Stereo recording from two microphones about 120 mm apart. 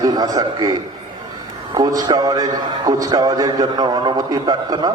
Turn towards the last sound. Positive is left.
turn(degrees=-35)  # may be behind; listen again after turning